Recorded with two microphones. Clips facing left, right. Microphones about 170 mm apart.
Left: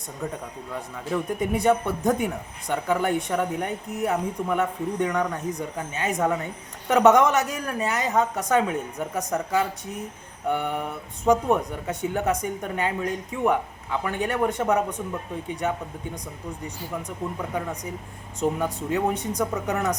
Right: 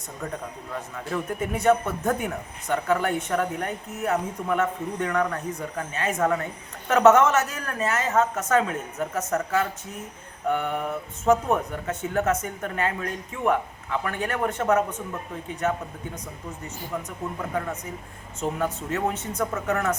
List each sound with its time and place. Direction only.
1.1 s speech: 15° left (ahead or behind)
18.3 s speech: 15° left (ahead or behind)